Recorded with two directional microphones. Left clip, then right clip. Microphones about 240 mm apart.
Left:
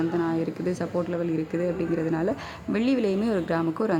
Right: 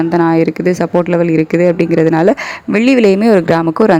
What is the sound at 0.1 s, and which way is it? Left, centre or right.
Speech, right.